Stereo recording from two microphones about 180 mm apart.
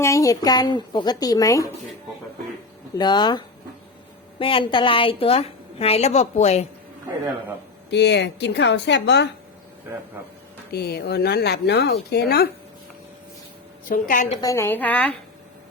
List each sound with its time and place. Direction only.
0.0 s speech: 15° left (ahead or behind)
2.9 s a woman's voice: 25° left (ahead or behind)
7.9 s a woman's voice: 70° left (ahead or behind)
10.7 s speech: 60° left (ahead or behind)
13.8 s a woman's voice: 50° left (ahead or behind)
14.4 s a woman's voice: 15° left (ahead or behind)